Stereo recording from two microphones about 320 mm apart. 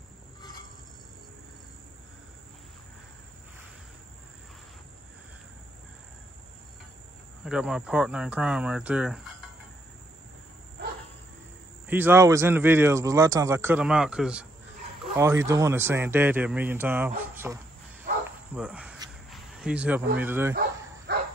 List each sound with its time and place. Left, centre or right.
0.4 s train: centre
7.4 s speech: centre
11.9 s speech: centre
18.1 s insect: right
18.5 s cricket: centre
20.2 s speech: centre
21.1 s bow-wow: right